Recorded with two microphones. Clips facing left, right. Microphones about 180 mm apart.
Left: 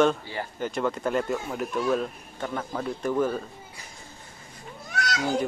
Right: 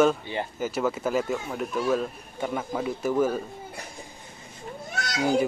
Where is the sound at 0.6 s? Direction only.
5° right (ahead or behind).